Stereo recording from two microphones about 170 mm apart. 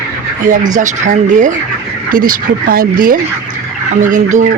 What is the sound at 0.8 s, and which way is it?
Speech, 45° right (ahead or behind).